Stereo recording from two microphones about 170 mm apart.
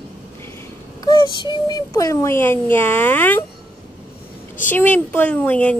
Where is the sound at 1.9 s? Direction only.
20° left (ahead or behind).